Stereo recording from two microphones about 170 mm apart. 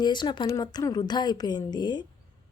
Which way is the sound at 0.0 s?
25° left (ahead or behind).